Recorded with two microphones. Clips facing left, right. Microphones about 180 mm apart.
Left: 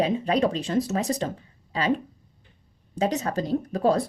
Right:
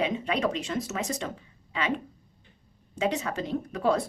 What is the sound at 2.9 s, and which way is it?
Speech, 40° left (ahead or behind).